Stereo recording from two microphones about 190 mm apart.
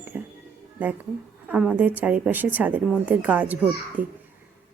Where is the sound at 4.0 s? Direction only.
45° right (ahead or behind).